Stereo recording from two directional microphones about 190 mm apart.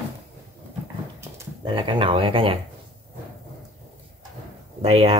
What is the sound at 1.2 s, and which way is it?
Dog, 15° right (ahead or behind).